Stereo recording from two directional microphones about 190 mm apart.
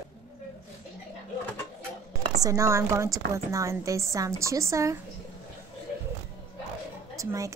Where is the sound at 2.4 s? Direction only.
15° right (ahead or behind).